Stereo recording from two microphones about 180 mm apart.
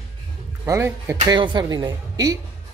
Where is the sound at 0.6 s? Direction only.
15° right (ahead or behind).